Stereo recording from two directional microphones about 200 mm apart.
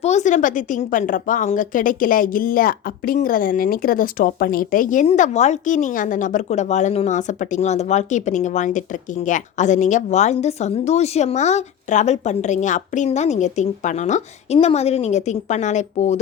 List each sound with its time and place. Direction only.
0.0 s a woman's voice: 35° left (ahead or behind)